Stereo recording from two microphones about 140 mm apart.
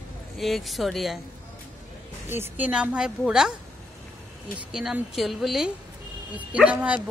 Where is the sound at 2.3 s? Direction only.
15° right (ahead or behind).